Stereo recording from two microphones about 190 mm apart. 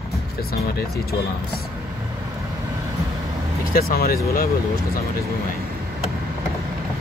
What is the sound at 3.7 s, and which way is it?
Speech, 50° left (ahead or behind).